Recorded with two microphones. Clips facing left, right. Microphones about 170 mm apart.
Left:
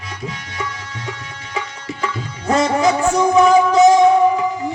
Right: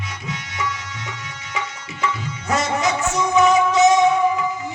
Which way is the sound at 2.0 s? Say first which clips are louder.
Right 1 dB; 30° left (ahead or behind).